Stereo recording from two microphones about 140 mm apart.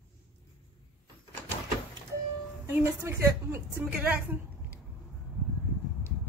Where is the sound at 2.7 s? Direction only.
20° right (ahead or behind).